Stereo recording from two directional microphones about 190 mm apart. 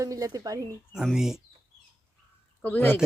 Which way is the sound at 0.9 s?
Centre (ahead or behind).